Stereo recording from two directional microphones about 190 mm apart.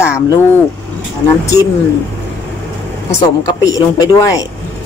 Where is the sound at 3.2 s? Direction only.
20° left (ahead or behind).